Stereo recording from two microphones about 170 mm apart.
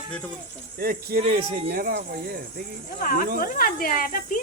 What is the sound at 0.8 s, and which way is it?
Speech, 65° right (ahead or behind).